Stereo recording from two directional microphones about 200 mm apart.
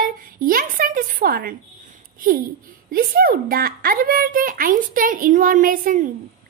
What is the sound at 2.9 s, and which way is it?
A woman's voice, 45° right (ahead or behind).